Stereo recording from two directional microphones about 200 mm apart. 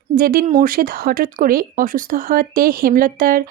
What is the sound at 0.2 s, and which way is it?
Speech, 50° right (ahead or behind).